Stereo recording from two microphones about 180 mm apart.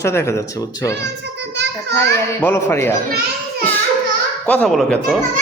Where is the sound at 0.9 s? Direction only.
75° right (ahead or behind).